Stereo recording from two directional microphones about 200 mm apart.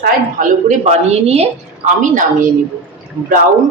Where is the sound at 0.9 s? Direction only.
35° right (ahead or behind).